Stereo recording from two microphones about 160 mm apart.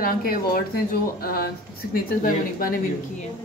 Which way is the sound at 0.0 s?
65° left (ahead or behind).